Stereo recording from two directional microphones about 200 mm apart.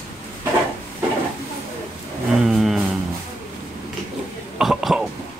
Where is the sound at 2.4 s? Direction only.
Centre (ahead or behind).